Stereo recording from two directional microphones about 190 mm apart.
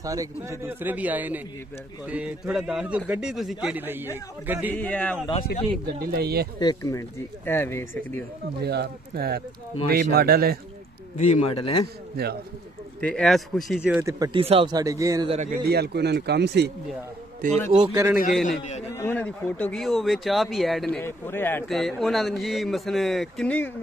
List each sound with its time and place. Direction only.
0.0 s a man's voice: 15° right (ahead or behind)
4.7 s speech: 10° left (ahead or behind)
5.5 s speech: 50° left (ahead or behind)
5.9 s a man's voice: 55° right (ahead or behind)
6.6 s speech: 20° left (ahead or behind)
8.5 s a man's voice: 55° right (ahead or behind)
11.1 s speech: 35° left (ahead or behind)
13.0 s speech: centre (ahead or behind)
14.0 s speech: 20° right (ahead or behind)
14.4 s speech: 30° right (ahead or behind)
15.2 s a man's voice: 40° right (ahead or behind); by 16.7 s 60° right (ahead or behind)
17.7 s a man's voice: 20° right (ahead or behind)
18.6 s speech: 35° left (ahead or behind)
18.9 s speech: 10° left (ahead or behind)